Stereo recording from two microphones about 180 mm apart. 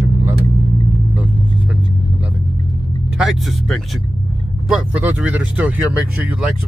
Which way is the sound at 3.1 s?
Centre (ahead or behind).